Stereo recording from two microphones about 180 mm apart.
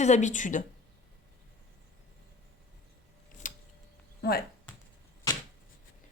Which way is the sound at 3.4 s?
45° left (ahead or behind).